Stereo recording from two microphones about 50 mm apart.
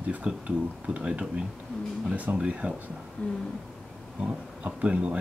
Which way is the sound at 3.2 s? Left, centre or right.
Left.